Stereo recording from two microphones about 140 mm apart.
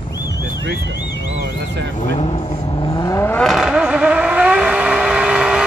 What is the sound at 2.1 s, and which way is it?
Vehicle, 45° left (ahead or behind).